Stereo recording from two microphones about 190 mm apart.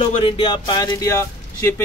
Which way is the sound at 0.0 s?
25° left (ahead or behind).